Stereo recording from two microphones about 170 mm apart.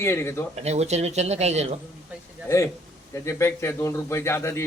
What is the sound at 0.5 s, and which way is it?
Speech, 40° right (ahead or behind).